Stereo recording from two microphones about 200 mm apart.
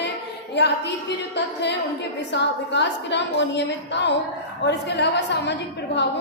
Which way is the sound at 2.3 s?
60° left (ahead or behind).